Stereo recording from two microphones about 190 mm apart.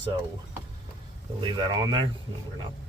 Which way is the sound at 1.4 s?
25° right (ahead or behind).